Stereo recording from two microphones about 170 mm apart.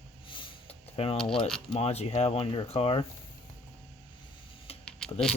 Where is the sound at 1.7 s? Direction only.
35° left (ahead or behind).